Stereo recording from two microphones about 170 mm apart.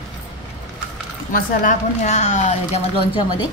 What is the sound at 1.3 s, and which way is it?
Speech, 45° left (ahead or behind).